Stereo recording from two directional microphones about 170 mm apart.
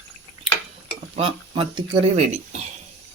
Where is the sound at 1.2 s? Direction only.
30° right (ahead or behind).